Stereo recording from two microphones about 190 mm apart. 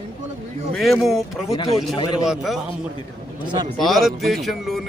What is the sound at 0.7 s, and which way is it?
Speech, centre (ahead or behind).